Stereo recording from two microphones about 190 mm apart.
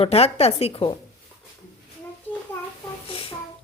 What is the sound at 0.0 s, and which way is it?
Speech, 30° left (ahead or behind).